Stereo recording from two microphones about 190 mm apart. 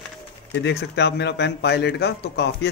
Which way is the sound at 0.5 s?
60° left (ahead or behind).